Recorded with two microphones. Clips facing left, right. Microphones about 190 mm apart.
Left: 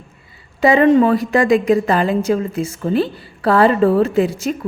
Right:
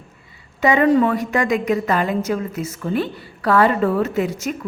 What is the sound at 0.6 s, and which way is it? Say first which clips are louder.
A woman's voice: left 4 dB; 30° left (ahead or behind).